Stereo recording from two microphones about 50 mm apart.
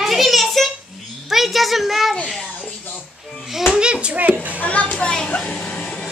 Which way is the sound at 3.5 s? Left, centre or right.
Centre.